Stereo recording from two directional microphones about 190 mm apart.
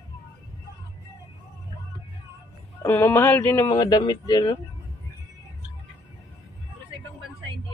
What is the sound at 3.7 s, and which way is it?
Speech, 25° left (ahead or behind).